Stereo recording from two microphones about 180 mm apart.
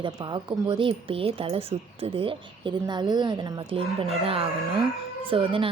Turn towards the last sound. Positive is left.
turn(degrees=-30)  # may be behind; listen again after turning